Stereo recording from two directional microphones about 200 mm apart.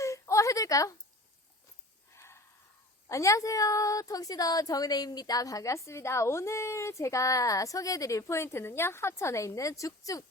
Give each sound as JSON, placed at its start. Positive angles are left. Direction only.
{"t": 0.0, "sound": "a sound", "side_deg": 15}
{"t": 2.1, "sound": "snort", "side_deg": 15}
{"t": 3.1, "sound": "a woman's voice", "side_deg": 15}